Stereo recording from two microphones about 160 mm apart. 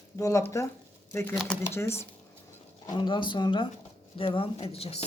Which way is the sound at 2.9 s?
30° left (ahead or behind).